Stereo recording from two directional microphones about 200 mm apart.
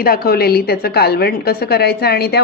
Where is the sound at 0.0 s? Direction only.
50° left (ahead or behind).